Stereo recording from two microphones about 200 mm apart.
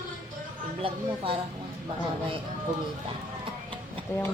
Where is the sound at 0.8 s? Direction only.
25° right (ahead or behind).